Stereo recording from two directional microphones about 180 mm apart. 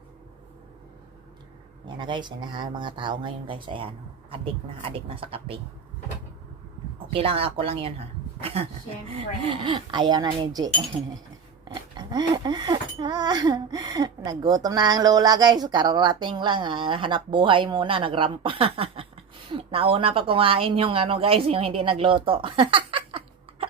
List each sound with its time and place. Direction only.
1.9 s speech: 25° right (ahead or behind)
7.1 s speech: 30° right (ahead or behind)